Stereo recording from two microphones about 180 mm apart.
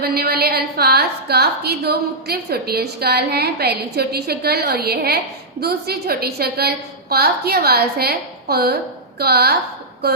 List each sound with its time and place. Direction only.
0.0 s a woman's voice: 60° right (ahead or behind)